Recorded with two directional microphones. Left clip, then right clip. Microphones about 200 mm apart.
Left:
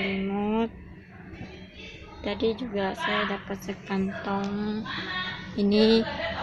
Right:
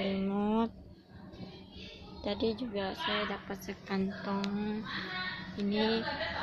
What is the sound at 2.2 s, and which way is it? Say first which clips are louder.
Speech: left 6 dB; 5° right (ahead or behind).